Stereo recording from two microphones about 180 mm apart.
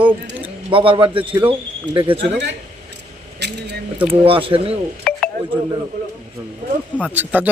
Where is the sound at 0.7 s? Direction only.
30° right (ahead or behind).